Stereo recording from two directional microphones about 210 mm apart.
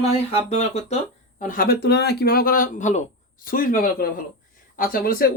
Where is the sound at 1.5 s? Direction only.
45° left (ahead or behind).